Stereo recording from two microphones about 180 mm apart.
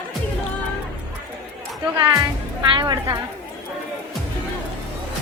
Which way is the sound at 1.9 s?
20° right (ahead or behind).